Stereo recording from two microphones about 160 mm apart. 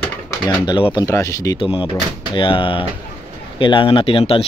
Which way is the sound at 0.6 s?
30° left (ahead or behind).